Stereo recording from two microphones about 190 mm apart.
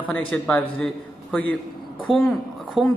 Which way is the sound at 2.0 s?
Centre (ahead or behind).